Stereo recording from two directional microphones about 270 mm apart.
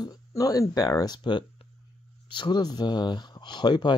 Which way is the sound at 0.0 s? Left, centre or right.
Centre.